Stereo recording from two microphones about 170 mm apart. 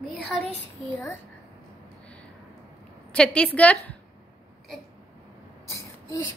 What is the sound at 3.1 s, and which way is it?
Speech, 5° left (ahead or behind).